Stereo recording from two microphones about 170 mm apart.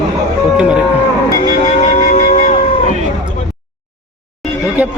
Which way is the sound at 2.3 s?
50° left (ahead or behind).